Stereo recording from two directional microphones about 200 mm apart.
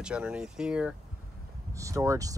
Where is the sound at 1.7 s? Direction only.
15° right (ahead or behind).